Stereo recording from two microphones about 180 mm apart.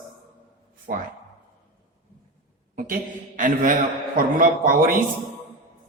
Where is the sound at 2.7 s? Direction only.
50° right (ahead or behind).